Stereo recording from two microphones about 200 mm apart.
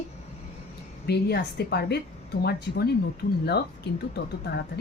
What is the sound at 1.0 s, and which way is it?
A woman's voice, 55° left (ahead or behind).